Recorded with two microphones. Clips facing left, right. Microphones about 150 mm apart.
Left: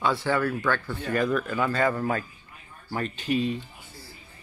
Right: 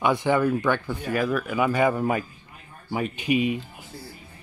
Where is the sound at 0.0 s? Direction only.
20° right (ahead or behind).